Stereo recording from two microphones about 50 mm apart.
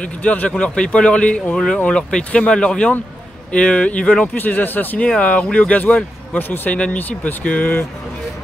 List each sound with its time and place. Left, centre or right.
0.0 s speech: left
4.4 s speech: left